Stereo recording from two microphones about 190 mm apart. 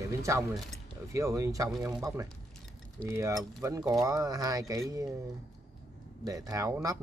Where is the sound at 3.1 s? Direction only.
15° right (ahead or behind).